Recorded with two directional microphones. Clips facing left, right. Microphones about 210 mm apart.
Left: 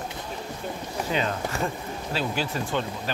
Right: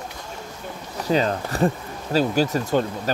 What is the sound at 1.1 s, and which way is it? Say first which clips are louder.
Speech: right 7 dB; 35° right (ahead or behind).